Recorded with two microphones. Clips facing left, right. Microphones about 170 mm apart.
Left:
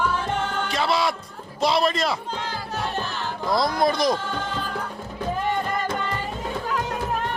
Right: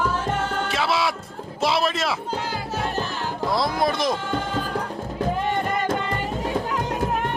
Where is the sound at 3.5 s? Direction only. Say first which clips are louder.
Left 2 dB; 5° right (ahead or behind).